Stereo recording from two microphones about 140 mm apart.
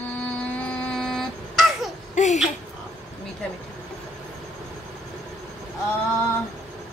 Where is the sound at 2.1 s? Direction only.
60° left (ahead or behind).